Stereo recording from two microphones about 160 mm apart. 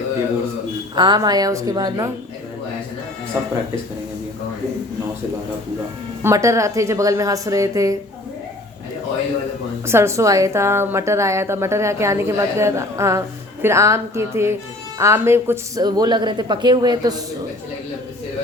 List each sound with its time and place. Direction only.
0.9 s speech: 25° right (ahead or behind)
6.2 s speech: 20° right (ahead or behind)
9.8 s a woman's voice: 15° right (ahead or behind)